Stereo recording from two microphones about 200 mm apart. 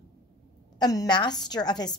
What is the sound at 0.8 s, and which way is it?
A woman's voice, 20° left (ahead or behind).